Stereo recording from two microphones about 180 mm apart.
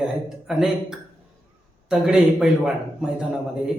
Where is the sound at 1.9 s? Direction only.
5° right (ahead or behind).